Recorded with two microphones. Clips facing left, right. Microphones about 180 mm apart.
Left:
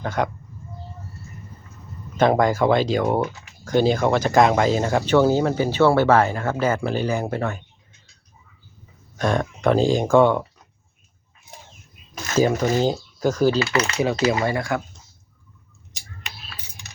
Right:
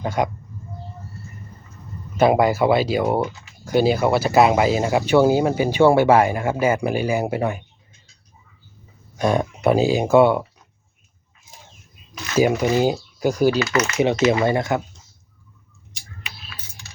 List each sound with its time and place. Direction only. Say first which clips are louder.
0.0 s speech: right 2 dB; 10° right (ahead or behind)
2.1 s speech: right 2 dB; 10° right (ahead or behind)
9.1 s speech: right 2 dB; 10° right (ahead or behind)
12.4 s speech: right 2 dB; 15° right (ahead or behind)
13.6 s speech: right 1 dB; 30° left (ahead or behind)
14.3 s speech: right 3 dB; 25° right (ahead or behind)